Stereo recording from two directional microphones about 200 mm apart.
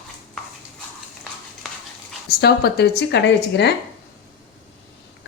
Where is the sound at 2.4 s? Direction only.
55° left (ahead or behind).